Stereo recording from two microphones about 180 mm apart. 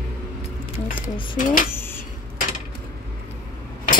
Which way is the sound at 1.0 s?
30° left (ahead or behind).